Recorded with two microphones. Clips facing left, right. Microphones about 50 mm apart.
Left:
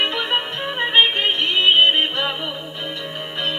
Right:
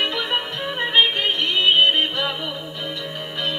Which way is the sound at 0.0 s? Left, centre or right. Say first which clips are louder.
Left 2 dB; left.